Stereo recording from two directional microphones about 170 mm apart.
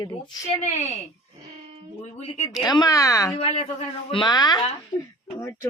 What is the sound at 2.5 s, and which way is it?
Speech, 25° left (ahead or behind).